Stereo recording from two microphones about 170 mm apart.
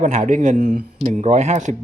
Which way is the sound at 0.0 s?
45° right (ahead or behind).